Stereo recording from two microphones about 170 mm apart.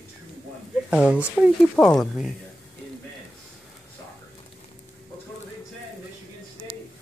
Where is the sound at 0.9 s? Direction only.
5° right (ahead or behind).